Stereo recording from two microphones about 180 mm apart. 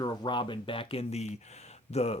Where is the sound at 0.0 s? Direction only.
25° left (ahead or behind).